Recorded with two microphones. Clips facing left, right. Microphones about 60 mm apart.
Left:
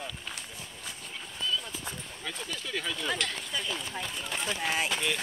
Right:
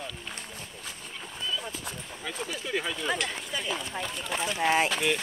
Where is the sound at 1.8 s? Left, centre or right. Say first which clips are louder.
Right 2 dB; centre.